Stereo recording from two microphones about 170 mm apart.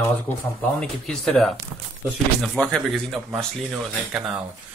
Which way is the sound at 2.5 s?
5° left (ahead or behind).